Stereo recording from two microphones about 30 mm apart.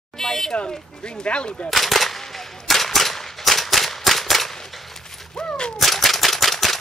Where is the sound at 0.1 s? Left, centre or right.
Centre.